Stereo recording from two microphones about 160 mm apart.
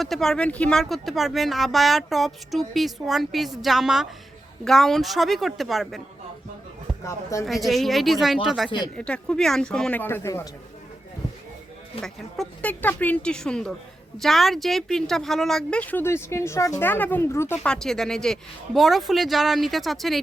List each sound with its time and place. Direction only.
0.0 s speech: centre (ahead or behind)
7.0 s speech: 20° left (ahead or behind)
7.4 s speech: centre (ahead or behind); by 10.5 s 15° left (ahead or behind)
12.0 s speech: 5° left (ahead or behind)